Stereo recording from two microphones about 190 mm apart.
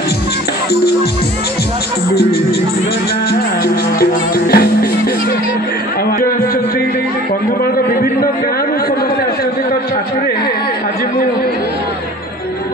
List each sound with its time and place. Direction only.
3.6 s music: 55° left (ahead or behind)